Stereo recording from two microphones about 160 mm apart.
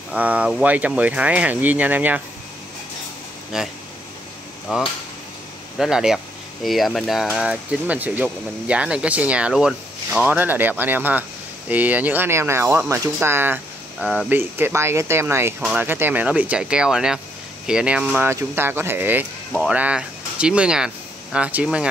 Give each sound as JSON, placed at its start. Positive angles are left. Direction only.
{"t": 0.1, "sound": "speech", "side_deg": -10}
{"t": 3.5, "sound": "speech", "side_deg": -5}